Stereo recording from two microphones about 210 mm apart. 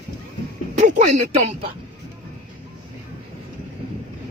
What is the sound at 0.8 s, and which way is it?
Speech, 35° right (ahead or behind).